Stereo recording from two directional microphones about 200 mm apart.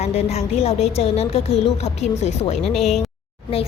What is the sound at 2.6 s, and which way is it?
Speech, centre (ahead or behind).